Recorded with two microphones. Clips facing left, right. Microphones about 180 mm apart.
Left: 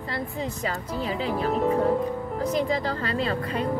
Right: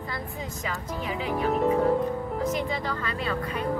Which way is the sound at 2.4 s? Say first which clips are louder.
Left 6 dB; 35° left (ahead or behind).